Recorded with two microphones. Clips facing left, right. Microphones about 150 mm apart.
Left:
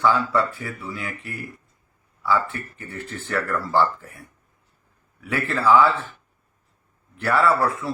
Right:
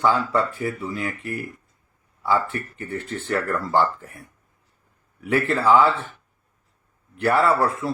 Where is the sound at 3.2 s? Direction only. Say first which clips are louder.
Right 1 dB; 25° right (ahead or behind).